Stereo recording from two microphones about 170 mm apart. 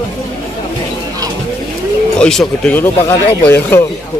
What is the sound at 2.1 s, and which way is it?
Speech, 5° left (ahead or behind).